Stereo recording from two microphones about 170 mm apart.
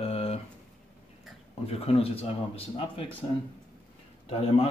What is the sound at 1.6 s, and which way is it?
Speech, 35° left (ahead or behind).